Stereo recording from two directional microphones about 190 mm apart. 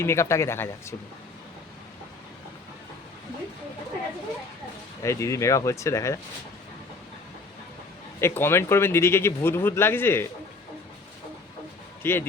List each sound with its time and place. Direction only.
0.0 s speech: 15° left (ahead or behind)
5.0 s speech: 15° left (ahead or behind)
8.2 s speech: 15° left (ahead or behind)
12.0 s speech: 10° left (ahead or behind)